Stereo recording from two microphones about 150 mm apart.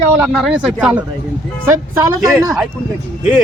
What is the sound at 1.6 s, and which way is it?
Speech, 15° right (ahead or behind).